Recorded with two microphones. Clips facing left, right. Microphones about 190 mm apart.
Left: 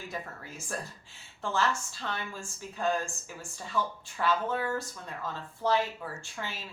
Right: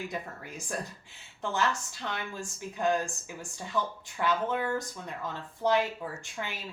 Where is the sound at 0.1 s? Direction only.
15° right (ahead or behind).